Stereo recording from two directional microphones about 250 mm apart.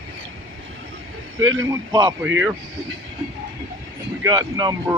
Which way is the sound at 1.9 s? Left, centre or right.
Centre.